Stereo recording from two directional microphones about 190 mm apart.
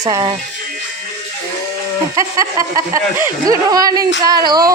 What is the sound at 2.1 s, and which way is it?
Speech, 20° right (ahead or behind).